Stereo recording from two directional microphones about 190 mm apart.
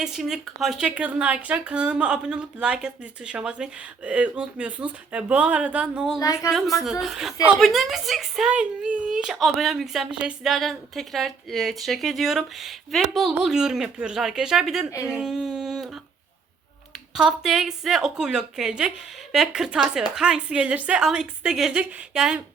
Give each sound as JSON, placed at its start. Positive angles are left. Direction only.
{"t": 0.0, "sound": "speech", "side_deg": 0}
{"t": 6.1, "sound": "speech", "side_deg": 15}
{"t": 6.5, "sound": "speech", "side_deg": 0}
{"t": 15.0, "sound": "a sound", "side_deg": -5}
{"t": 17.2, "sound": "speech", "side_deg": 0}